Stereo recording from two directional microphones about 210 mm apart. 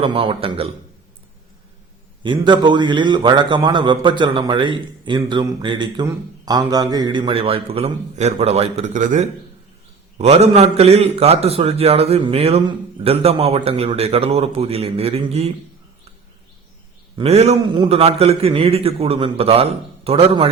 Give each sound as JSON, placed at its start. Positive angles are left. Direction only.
{"t": 0.0, "sound": "a man's voice", "side_deg": -25}
{"t": 2.2, "sound": "a man's voice", "side_deg": -20}
{"t": 17.2, "sound": "a man's voice", "side_deg": -30}